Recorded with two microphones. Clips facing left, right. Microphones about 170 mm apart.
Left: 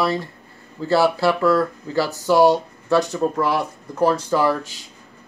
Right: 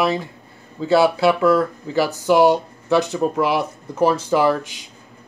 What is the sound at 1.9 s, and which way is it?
Speech, 15° right (ahead or behind).